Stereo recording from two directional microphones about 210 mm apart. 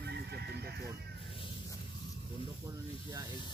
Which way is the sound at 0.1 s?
50° right (ahead or behind).